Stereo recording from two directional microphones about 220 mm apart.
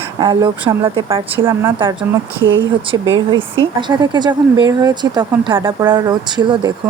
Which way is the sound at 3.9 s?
20° right (ahead or behind).